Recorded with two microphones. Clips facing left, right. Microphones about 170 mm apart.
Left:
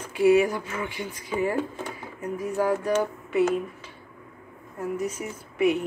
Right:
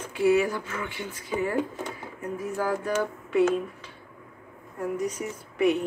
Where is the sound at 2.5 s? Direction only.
20° left (ahead or behind).